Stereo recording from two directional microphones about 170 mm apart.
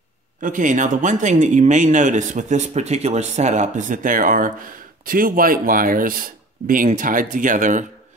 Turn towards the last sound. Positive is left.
turn(degrees=-50)  # may be behind; listen again after turning